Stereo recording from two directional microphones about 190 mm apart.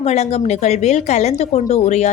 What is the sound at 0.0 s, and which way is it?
Speech, 35° left (ahead or behind).